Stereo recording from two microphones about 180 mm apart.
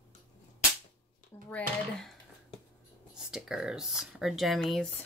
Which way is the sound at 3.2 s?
Centre (ahead or behind).